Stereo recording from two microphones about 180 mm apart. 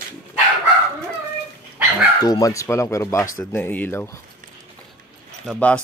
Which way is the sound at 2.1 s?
20° left (ahead or behind).